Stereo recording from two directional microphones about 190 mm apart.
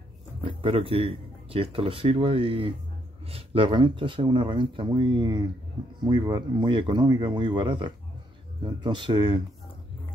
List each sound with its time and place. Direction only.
0.4 s speech: 30° right (ahead or behind)